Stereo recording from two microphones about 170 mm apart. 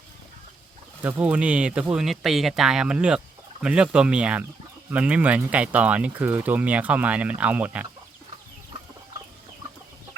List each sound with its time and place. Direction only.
1.0 s speech: 10° right (ahead or behind)